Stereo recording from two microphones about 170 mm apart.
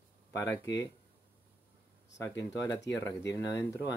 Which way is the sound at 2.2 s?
20° left (ahead or behind).